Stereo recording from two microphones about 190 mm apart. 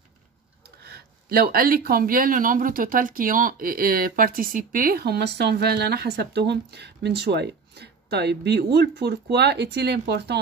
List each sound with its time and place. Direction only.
0.8 s speech: 55° right (ahead or behind)